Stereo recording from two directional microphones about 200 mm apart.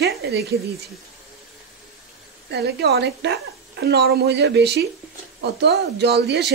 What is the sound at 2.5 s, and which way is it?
A woman's voice, 55° right (ahead or behind).